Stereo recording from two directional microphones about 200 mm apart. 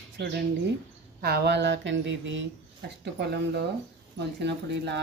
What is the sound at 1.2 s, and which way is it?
Speech, 55° right (ahead or behind).